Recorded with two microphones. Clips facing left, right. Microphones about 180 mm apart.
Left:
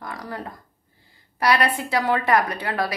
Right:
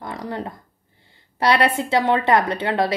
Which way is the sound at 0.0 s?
25° right (ahead or behind).